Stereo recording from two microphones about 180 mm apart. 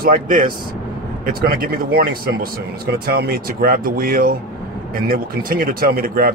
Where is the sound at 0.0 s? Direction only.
50° right (ahead or behind).